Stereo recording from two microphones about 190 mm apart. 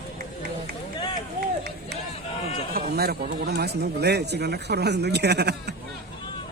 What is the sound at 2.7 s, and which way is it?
Speech, 55° right (ahead or behind).